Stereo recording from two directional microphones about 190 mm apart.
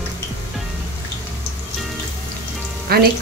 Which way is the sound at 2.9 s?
55° right (ahead or behind).